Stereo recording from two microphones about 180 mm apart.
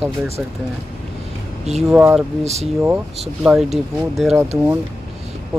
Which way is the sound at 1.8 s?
5° right (ahead or behind).